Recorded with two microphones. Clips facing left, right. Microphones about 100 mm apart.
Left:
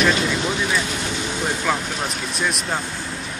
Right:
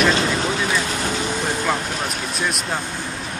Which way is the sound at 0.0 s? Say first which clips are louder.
Right 1 dB; 35° right (ahead or behind).